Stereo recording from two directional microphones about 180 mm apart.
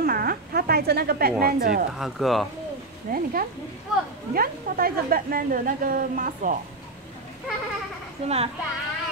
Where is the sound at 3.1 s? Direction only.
50° right (ahead or behind).